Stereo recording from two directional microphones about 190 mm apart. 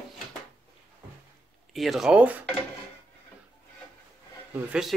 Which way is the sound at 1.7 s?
Centre (ahead or behind).